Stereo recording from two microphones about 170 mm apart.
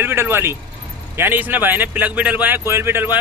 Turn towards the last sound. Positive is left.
turn(degrees=-10)  # may be behind; listen again after turning